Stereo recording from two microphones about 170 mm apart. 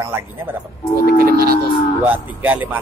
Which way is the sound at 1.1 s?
65° right (ahead or behind).